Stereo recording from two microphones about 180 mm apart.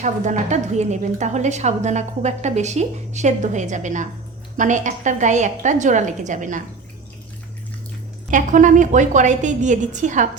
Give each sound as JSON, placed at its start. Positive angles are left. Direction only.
{"t": 0.0, "sound": "a woman's voice", "side_deg": -40}
{"t": 8.3, "sound": "a woman's voice", "side_deg": -45}